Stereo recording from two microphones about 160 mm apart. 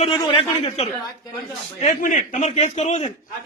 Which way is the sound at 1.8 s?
50° left (ahead or behind).